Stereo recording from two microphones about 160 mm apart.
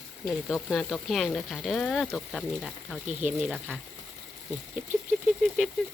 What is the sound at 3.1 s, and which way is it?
Speech, 10° right (ahead or behind).